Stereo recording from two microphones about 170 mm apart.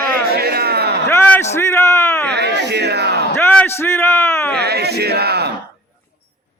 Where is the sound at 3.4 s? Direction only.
10° left (ahead or behind).